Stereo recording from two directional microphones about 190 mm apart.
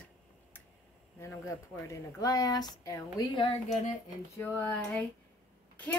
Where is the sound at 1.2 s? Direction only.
15° left (ahead or behind).